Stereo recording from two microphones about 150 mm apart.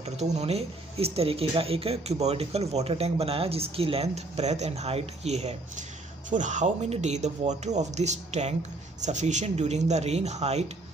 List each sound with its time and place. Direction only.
0.0 s speech: 45° right (ahead or behind)